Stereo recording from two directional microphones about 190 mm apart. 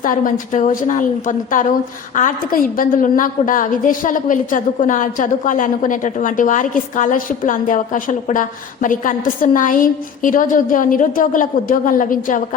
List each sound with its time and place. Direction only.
0.0 s a woman's voice: 45° left (ahead or behind)